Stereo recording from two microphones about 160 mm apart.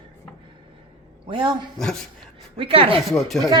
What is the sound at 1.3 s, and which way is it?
Speech, 30° right (ahead or behind).